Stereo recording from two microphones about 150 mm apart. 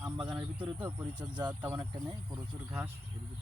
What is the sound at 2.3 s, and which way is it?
Speech, 10° right (ahead or behind).